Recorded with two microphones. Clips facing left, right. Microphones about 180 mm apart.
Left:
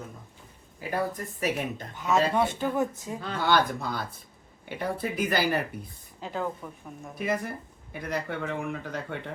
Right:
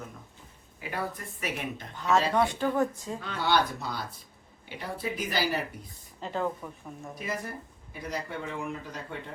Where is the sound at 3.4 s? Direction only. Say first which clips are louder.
Left 2 dB; 50° left (ahead or behind).